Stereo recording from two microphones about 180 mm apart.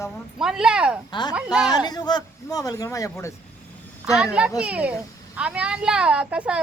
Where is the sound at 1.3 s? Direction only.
5° right (ahead or behind).